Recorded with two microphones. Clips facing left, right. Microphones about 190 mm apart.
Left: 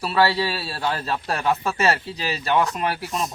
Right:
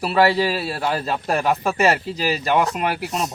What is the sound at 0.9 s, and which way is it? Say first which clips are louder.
Speech: right 2 dB; 15° right (ahead or behind).